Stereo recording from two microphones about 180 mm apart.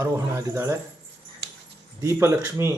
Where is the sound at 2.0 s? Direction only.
15° right (ahead or behind).